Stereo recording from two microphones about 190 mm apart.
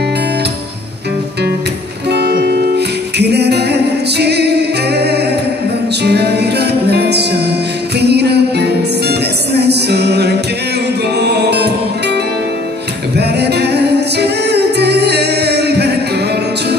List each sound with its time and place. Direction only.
2.0 s music: 60° right (ahead or behind)
13.2 s music: 60° right (ahead or behind)